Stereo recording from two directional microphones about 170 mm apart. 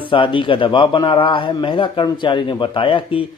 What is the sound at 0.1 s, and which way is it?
A man's voice, 30° left (ahead or behind).